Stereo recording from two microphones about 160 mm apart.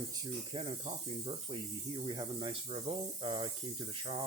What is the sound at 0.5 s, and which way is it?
Speech, 35° right (ahead or behind).